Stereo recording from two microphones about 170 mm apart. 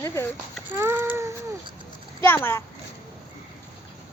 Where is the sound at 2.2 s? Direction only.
15° left (ahead or behind).